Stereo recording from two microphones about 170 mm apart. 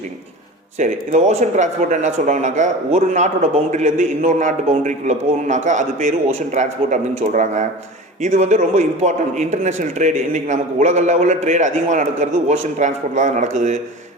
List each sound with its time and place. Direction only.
0.8 s speech: 45° right (ahead or behind)